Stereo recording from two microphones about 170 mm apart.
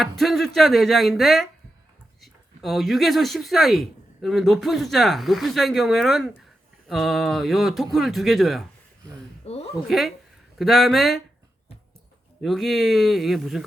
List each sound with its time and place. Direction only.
0.0 s speech: centre (ahead or behind)
9.5 s a sound: 35° left (ahead or behind)
10.6 s speech: centre (ahead or behind)
12.4 s speech: centre (ahead or behind)